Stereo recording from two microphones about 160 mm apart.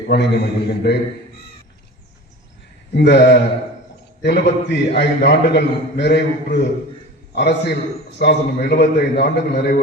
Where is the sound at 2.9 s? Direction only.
90° left.